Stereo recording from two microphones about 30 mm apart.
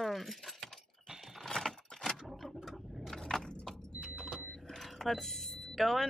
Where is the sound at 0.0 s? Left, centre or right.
Centre.